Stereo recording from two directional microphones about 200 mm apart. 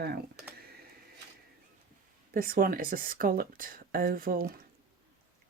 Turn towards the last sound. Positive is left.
turn(degrees=-45)  # may be behind; listen again after turning